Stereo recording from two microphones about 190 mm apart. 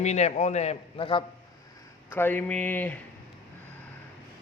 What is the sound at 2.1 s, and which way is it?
Speech, 10° left (ahead or behind).